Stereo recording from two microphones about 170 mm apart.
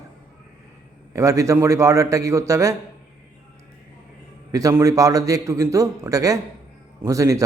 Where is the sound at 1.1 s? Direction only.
20° right (ahead or behind).